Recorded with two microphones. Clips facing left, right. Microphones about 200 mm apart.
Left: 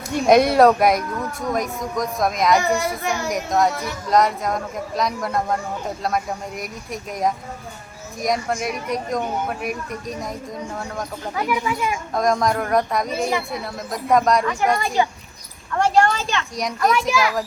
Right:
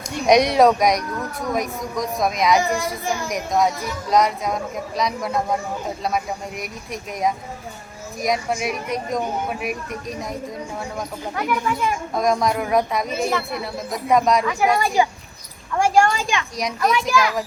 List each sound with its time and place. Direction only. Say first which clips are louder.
0.3 s speech: left 1 dB; centre (ahead or behind)
2.7 s a child's voice: left 1 dB; 65° left (ahead or behind)
3.2 s a woman's voice: left 1 dB; centre (ahead or behind)
16.6 s speech: left 2 dB; centre (ahead or behind)